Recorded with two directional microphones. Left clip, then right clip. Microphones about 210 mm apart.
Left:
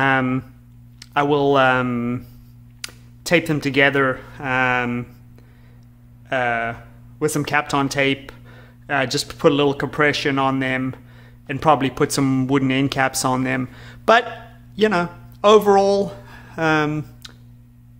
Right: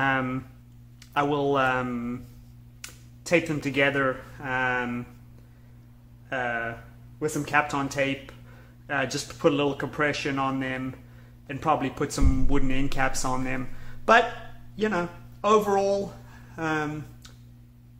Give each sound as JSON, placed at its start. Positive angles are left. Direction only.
{"t": 0.0, "sound": "a sound", "side_deg": 30}
{"t": 0.9, "sound": "speech", "side_deg": 30}
{"t": 6.2, "sound": "speech", "side_deg": 35}